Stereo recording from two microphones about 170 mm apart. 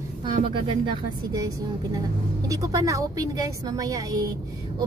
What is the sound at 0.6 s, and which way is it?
A woman's voice, 30° right (ahead or behind).